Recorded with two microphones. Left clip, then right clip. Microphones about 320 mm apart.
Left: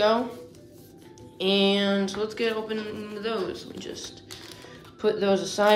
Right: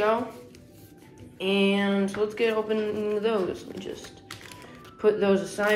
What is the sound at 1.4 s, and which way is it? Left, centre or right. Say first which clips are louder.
Speech: left 2 dB; centre.